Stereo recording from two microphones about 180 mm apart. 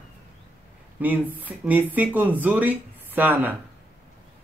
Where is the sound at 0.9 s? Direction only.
10° right (ahead or behind).